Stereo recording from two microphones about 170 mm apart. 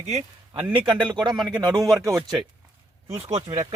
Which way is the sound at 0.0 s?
40° right (ahead or behind).